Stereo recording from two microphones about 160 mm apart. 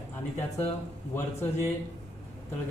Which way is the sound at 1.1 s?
15° left (ahead or behind).